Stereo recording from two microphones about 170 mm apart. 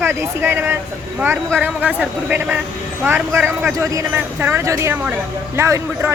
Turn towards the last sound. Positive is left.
turn(degrees=-15)  # may be behind; listen again after turning